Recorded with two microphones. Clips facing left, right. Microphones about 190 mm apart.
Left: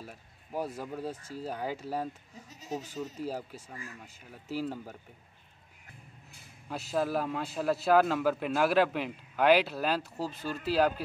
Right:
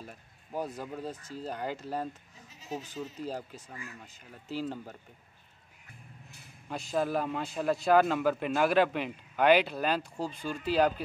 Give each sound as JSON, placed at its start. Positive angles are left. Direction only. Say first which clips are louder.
{"t": 0.0, "sound": "speech", "louder": "even", "side_deg": 5}
{"t": 2.5, "sound": "bleat", "louder": "left 1 dB", "side_deg": 40}
{"t": 2.8, "sound": "speech", "louder": "left 1 dB", "side_deg": 10}
{"t": 6.7, "sound": "a man's voice", "louder": "even", "side_deg": 5}